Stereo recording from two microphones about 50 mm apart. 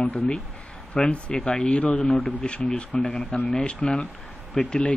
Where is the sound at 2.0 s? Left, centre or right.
Centre.